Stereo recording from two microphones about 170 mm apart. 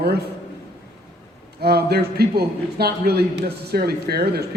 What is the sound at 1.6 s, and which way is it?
A man's voice, 70° right (ahead or behind).